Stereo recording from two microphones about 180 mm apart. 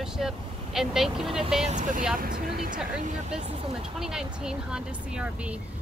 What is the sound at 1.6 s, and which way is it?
Speech, 45° right (ahead or behind).